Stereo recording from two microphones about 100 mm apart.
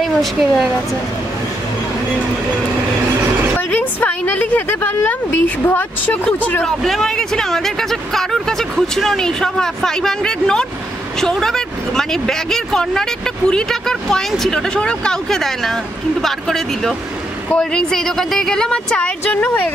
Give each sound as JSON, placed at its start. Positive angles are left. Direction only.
{"t": 0.0, "sound": "speech", "side_deg": 0}
{"t": 3.5, "sound": "speech", "side_deg": 15}
{"t": 6.6, "sound": "speech", "side_deg": 0}